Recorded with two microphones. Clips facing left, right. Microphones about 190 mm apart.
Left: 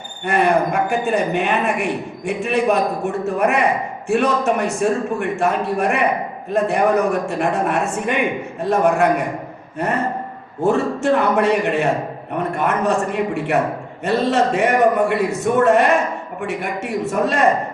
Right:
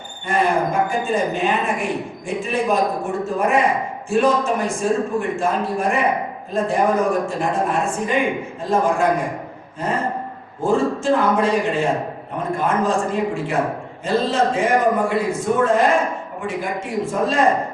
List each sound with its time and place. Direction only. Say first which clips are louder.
0.3 s a man's voice: left 2 dB; 70° left (ahead or behind)